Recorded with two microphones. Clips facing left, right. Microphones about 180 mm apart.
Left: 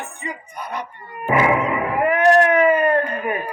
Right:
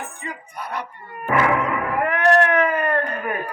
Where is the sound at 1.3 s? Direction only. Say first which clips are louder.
Left 2 dB; 10° left (ahead or behind).